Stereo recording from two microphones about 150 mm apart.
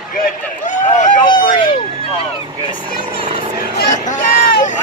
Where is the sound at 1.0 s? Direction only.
65° left (ahead or behind).